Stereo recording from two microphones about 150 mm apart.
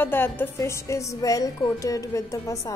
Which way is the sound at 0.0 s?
15° left (ahead or behind).